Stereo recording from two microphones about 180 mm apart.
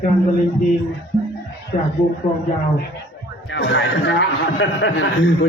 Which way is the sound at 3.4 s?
75° left (ahead or behind).